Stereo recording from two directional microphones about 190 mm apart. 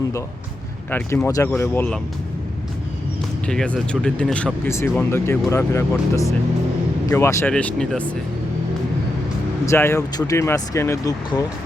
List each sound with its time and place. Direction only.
0.9 s speech: 10° left (ahead or behind)
3.4 s speech: 5° left (ahead or behind)
9.6 s speech: 15° left (ahead or behind)